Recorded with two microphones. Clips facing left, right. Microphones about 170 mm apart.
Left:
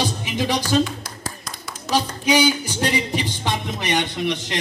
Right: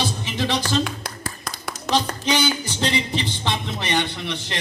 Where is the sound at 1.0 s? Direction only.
60° right (ahead or behind).